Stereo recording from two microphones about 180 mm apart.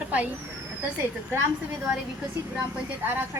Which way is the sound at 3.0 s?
10° right (ahead or behind).